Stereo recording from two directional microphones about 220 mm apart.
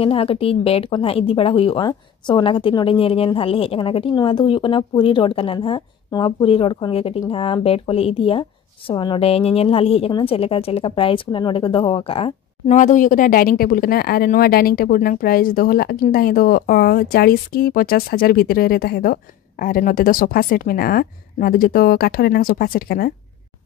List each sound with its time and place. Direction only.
0.0 s a woman's voice: 25° left (ahead or behind); by 23.1 s 45° left (ahead or behind)